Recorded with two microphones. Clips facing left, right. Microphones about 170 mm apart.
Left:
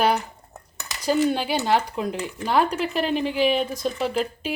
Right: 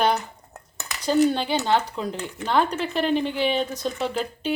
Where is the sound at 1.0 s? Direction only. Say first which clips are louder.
Right 1 dB; 10° left (ahead or behind).